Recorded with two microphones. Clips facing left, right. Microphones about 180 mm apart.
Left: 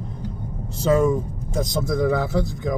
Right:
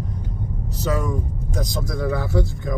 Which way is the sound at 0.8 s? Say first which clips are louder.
Left 6 dB; 25° left (ahead or behind).